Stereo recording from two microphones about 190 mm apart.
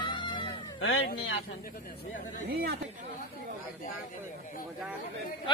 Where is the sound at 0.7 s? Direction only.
90° left.